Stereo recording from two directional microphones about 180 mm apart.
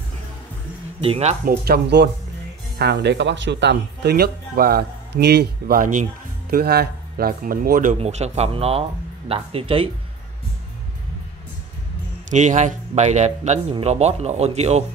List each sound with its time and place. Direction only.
1.0 s a man's voice: 35° right (ahead or behind)
1.4 s speech: 60° right (ahead or behind)
6.5 s speech: 60° right (ahead or behind)
8.0 s a man's voice: 35° right (ahead or behind)
12.3 s a man's voice: 45° right (ahead or behind)